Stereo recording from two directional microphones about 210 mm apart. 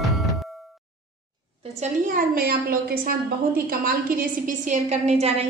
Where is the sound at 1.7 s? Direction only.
45° right (ahead or behind).